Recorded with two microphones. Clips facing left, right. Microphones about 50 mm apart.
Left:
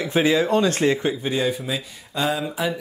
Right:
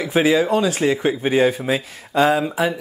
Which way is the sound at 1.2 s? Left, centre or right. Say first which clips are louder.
Right 7 dB; right.